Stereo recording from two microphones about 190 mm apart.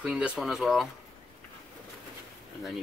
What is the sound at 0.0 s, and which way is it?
Speech, 5° right (ahead or behind).